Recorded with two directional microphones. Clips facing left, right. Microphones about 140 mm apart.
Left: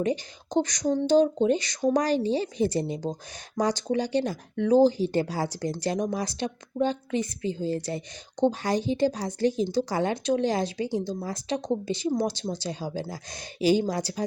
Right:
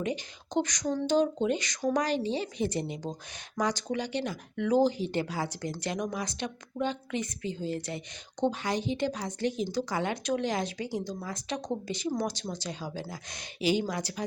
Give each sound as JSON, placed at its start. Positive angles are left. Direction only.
{"t": 0.0, "sound": "speech", "side_deg": 35}